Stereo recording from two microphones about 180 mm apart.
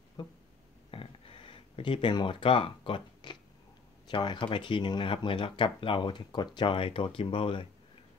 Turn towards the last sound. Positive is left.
turn(degrees=30)  # may be behind; listen again after turning